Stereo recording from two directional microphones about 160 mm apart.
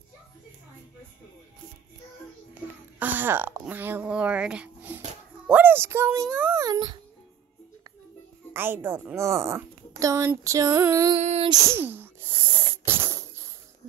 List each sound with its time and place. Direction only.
3.0 s a woman's voice: 10° right (ahead or behind)
8.5 s a woman's voice: 15° right (ahead or behind)
11.1 s female singing: 40° right (ahead or behind)
11.5 s sneeze: 15° right (ahead or behind)